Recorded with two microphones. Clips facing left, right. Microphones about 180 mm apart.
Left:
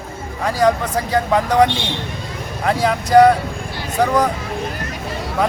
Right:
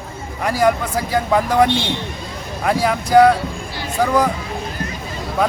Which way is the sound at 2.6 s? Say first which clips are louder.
Even; 5° right (ahead or behind).